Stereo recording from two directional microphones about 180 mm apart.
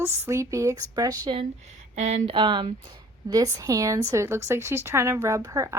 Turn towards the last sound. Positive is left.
turn(degrees=-20)  # may be behind; listen again after turning